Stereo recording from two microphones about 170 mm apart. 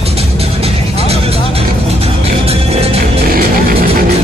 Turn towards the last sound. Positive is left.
turn(degrees=-60)  # may be behind; listen again after turning